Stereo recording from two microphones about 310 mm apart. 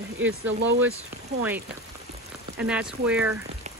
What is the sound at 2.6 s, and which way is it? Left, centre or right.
Speech, centre.